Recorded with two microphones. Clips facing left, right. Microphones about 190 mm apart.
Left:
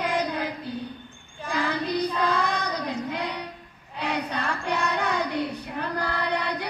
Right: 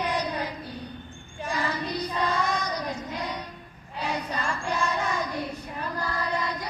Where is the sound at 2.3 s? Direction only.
60° left (ahead or behind).